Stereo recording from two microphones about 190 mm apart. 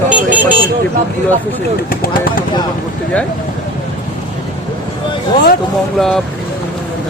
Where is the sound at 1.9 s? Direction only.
50° left (ahead or behind).